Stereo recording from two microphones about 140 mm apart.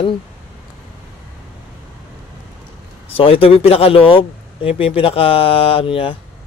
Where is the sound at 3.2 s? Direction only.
40° left (ahead or behind).